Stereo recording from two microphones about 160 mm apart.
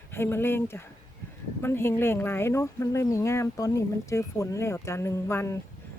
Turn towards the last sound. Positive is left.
turn(degrees=15)  # may be behind; listen again after turning